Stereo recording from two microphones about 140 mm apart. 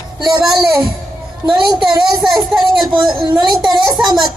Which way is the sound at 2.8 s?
35° right (ahead or behind).